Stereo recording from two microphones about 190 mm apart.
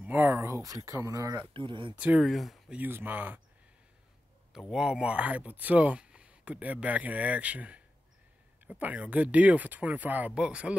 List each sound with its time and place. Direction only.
0.0 s speech: 10° right (ahead or behind); by 2.0 s 25° right (ahead or behind)
2.0 s speech: 5° right (ahead or behind)
4.5 s speech: 5° right (ahead or behind)